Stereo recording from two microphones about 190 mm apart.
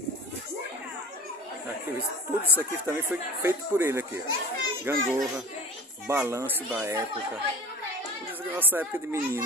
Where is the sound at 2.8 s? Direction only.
10° right (ahead or behind).